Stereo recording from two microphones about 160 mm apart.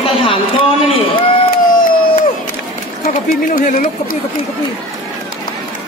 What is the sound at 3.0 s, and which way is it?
Speech, 55° left (ahead or behind).